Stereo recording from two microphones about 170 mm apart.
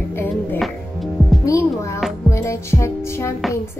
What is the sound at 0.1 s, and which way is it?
Music, 10° left (ahead or behind).